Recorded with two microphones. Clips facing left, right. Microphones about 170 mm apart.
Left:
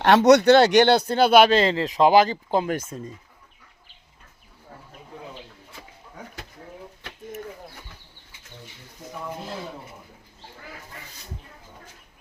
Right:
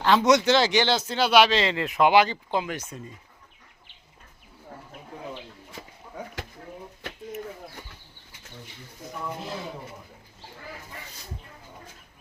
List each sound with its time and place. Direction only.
0.0 s speech: 70° left (ahead or behind); by 1.7 s 50° left (ahead or behind)
1.7 s speech: 35° left (ahead or behind)